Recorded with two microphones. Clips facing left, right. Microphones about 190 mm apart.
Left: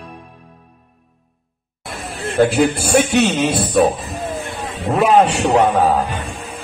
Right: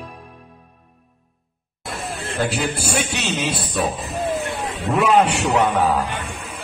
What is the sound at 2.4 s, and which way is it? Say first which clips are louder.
Speech: left 9 dB; 55° left (ahead or behind).